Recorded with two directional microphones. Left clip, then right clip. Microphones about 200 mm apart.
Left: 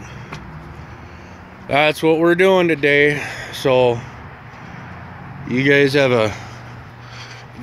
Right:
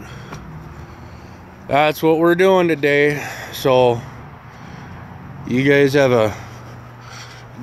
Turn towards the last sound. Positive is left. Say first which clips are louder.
# right 1 dB
turn(degrees=-10)  # may be behind; listen again after turning